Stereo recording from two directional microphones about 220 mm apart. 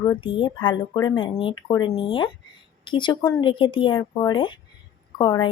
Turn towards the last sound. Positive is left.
turn(degrees=20)  # may be behind; listen again after turning